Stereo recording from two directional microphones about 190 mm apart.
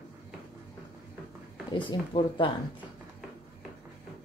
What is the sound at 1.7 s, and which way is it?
Speech, 25° left (ahead or behind).